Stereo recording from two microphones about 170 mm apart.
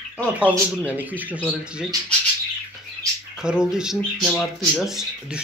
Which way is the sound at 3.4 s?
5° right (ahead or behind).